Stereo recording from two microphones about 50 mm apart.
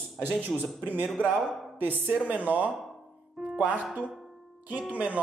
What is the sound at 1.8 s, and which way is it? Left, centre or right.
Speech, right.